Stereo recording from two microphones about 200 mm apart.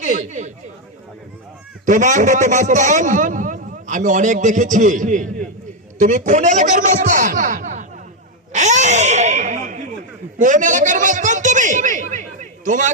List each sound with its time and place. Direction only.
0.0 s a man's voice: 40° right (ahead or behind)
1.8 s a man's voice: 40° right (ahead or behind)
8.5 s a sound: 35° right (ahead or behind)
10.3 s a man's voice: 40° right (ahead or behind)